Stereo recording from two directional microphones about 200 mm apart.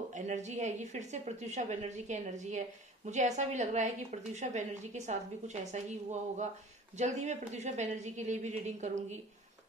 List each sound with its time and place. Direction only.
0.1 s a woman's voice: 35° right (ahead or behind)